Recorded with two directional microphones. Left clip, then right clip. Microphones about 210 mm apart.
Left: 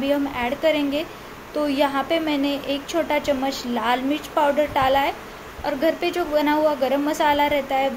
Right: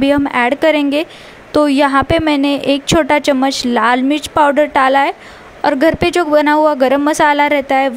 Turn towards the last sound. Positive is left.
turn(degrees=-50)  # may be behind; listen again after turning